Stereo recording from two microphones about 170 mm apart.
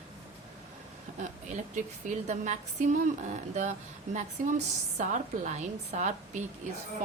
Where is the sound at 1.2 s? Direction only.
45° right (ahead or behind).